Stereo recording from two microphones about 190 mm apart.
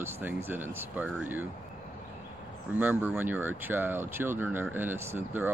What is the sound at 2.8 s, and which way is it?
Speech, 10° right (ahead or behind).